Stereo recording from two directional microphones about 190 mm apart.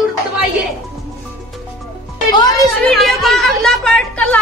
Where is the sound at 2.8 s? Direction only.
Centre (ahead or behind).